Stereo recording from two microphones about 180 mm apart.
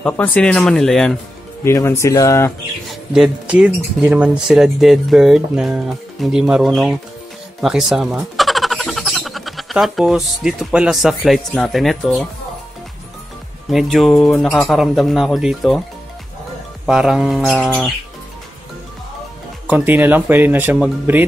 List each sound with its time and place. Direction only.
0.0 s speech: 5° left (ahead or behind)
1.6 s speech: 15° left (ahead or behind)
2.9 s speech: 5° right (ahead or behind)
13.7 s speech: centre (ahead or behind)
16.8 s speech: 5° right (ahead or behind)
19.7 s speech: 10° right (ahead or behind)